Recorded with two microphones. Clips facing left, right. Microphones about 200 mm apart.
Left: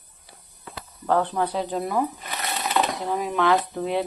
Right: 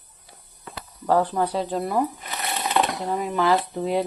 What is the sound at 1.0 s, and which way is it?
Speech, 5° right (ahead or behind).